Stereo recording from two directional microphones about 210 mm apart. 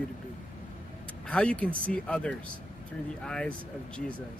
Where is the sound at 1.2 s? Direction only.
5° left (ahead or behind).